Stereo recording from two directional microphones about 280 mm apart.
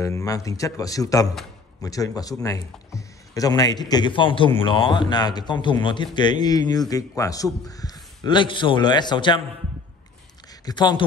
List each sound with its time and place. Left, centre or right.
0.0 s speech: centre
10.6 s speech: centre